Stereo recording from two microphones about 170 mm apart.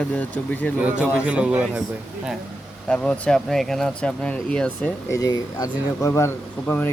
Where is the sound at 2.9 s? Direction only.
5° left (ahead or behind).